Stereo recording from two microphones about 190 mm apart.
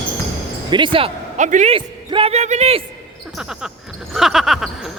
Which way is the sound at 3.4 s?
Centre (ahead or behind).